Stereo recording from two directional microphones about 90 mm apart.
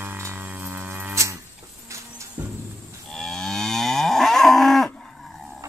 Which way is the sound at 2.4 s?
20° right (ahead or behind).